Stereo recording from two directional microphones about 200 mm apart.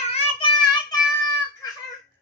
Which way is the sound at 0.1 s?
30° left (ahead or behind).